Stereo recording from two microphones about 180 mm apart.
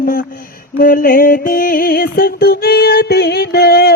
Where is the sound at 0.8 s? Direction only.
50° left (ahead or behind).